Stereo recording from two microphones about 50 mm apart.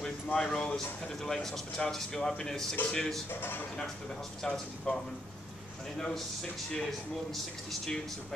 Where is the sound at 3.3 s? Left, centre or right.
Left.